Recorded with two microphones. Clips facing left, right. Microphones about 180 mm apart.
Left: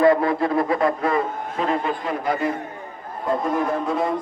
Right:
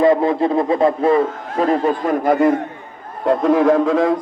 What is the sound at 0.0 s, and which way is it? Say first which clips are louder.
Speech: right 3 dB; 20° right (ahead or behind).